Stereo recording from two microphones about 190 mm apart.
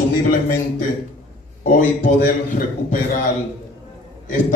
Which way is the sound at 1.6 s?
45° left (ahead or behind).